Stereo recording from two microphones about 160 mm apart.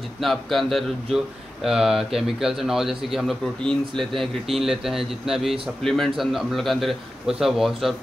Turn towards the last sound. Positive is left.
turn(degrees=0)  # may be behind; listen again after turning